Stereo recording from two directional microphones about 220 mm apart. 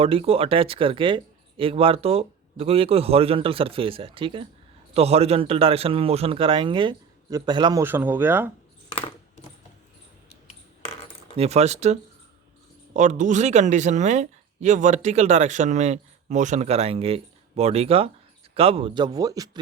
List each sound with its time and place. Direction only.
0.0 s speech: 25° right (ahead or behind); by 8.5 s 10° right (ahead or behind)
10.4 s coin: 25° left (ahead or behind)
11.3 s speech: 30° right (ahead or behind)